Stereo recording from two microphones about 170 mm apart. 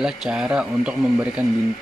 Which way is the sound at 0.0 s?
5° right (ahead or behind).